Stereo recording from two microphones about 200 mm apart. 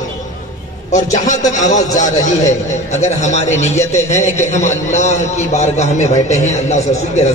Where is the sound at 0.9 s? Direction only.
40° left (ahead or behind).